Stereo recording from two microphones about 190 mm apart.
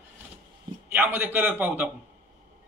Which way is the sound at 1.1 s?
10° right (ahead or behind).